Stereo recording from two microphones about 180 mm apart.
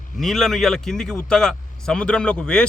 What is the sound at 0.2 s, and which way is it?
Speech, centre (ahead or behind).